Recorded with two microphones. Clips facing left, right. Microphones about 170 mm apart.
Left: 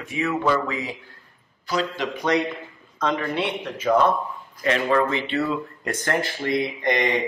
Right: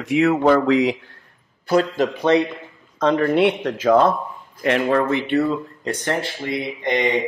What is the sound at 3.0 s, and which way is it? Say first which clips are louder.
Speech: right 7 dB; 30° right (ahead or behind).